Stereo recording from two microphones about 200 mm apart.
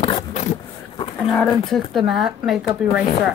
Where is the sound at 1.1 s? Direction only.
5° left (ahead or behind).